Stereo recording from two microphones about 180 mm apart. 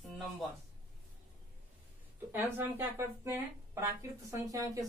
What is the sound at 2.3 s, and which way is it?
A woman's voice, 10° right (ahead or behind).